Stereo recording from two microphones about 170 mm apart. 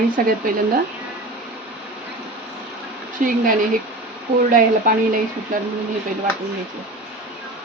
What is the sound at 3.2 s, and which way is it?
Speech, 50° right (ahead or behind).